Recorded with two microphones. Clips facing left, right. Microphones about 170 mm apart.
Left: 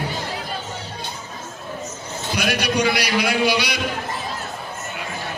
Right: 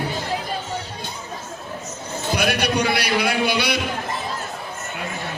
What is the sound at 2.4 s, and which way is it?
Music, 55° right (ahead or behind).